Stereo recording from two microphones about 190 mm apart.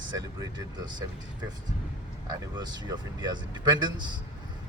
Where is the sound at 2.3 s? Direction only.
20° right (ahead or behind).